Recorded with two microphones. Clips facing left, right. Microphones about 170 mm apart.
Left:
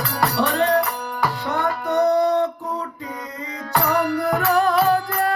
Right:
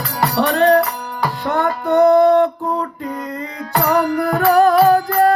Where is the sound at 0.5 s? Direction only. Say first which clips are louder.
Right 6 dB; 65° right (ahead or behind).